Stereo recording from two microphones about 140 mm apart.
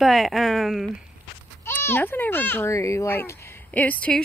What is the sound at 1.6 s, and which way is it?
Speech, 15° left (ahead or behind).